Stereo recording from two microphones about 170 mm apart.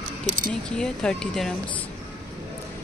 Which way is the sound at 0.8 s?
5° left (ahead or behind).